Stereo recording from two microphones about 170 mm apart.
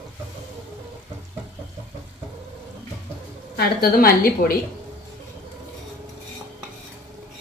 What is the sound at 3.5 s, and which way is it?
A woman's voice, 65° left (ahead or behind).